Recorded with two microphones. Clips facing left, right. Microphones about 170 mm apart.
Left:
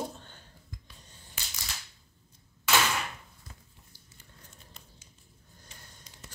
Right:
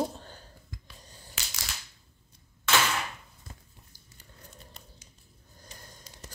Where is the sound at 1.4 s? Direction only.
90° right.